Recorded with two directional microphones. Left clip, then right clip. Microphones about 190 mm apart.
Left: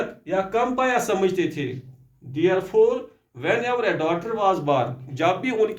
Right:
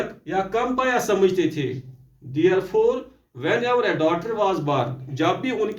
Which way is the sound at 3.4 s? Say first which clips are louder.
Right 2 dB; 30° left (ahead or behind).